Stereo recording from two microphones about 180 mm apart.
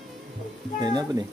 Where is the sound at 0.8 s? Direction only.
20° right (ahead or behind).